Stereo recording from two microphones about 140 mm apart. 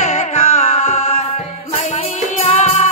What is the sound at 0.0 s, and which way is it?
Music, 55° left (ahead or behind).